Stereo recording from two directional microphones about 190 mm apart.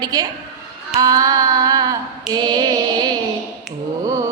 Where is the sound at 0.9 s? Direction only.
20° right (ahead or behind).